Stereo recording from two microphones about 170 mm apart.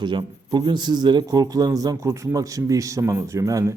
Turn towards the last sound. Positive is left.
turn(degrees=-20)  # may be behind; listen again after turning